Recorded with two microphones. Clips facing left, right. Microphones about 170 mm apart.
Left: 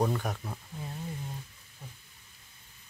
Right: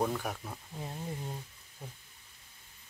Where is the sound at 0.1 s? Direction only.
5° right (ahead or behind).